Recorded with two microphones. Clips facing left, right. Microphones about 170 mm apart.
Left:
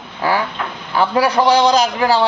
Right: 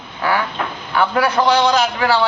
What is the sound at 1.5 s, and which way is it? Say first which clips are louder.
Speech: left 3 dB; 40° left (ahead or behind).